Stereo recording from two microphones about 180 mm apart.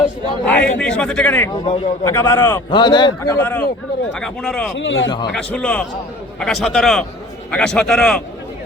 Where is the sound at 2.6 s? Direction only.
25° left (ahead or behind).